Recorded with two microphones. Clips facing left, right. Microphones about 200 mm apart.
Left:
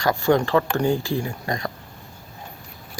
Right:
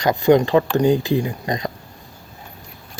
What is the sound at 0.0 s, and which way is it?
Speech, 20° right (ahead or behind).